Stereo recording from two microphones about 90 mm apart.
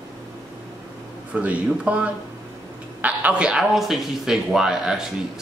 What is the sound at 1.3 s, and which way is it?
Speech, 15° right (ahead or behind).